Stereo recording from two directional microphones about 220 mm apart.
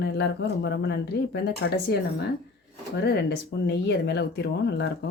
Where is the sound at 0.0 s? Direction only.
50° left (ahead or behind).